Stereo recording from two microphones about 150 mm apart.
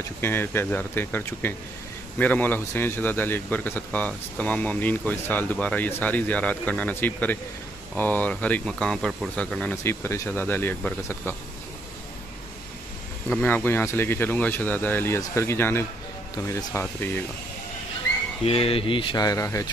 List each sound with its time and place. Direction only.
0.2 s a man's voice: 15° left (ahead or behind)
13.4 s a man's voice: 10° left (ahead or behind)
18.4 s speech: 40° left (ahead or behind)
19.2 s speech: 20° left (ahead or behind)